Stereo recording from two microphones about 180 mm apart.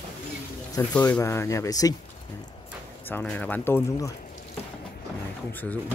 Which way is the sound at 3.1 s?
10° left (ahead or behind).